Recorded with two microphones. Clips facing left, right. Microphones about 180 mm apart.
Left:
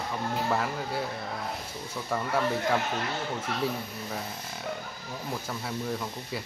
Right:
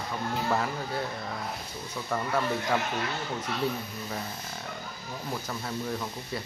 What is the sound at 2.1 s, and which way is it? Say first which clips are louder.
Speech: even; 5° left (ahead or behind).